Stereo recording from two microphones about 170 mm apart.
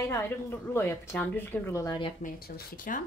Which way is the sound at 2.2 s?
60° left (ahead or behind).